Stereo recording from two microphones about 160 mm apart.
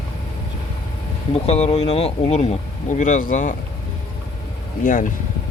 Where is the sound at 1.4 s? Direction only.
40° left (ahead or behind).